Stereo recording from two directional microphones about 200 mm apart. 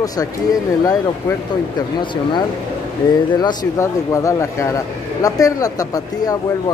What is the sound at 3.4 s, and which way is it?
A man's voice, 20° left (ahead or behind).